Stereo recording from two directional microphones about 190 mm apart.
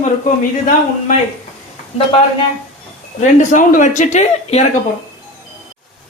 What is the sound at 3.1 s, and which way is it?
Speech, 40° left (ahead or behind).